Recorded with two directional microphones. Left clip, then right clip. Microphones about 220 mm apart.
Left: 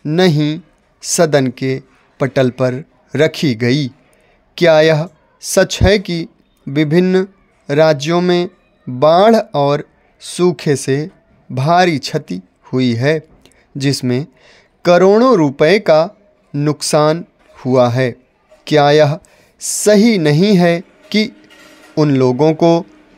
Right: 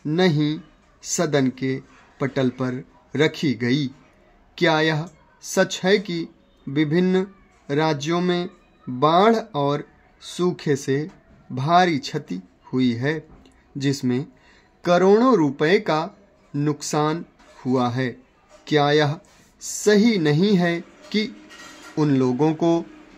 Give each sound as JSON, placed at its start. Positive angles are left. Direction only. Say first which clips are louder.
{"t": 0.0, "sound": "a man's voice", "louder": "left 7 dB", "side_deg": 45}